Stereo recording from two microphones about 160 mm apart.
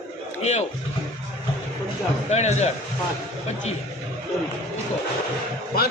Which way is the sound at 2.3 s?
45° left (ahead or behind).